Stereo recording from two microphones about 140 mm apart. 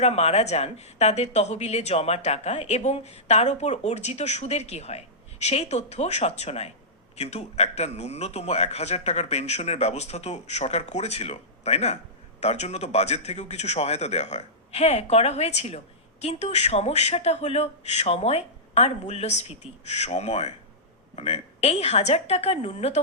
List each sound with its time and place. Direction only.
0.0 s speech: 50° left (ahead or behind)